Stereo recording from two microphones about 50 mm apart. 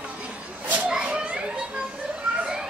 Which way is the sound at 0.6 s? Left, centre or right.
Right.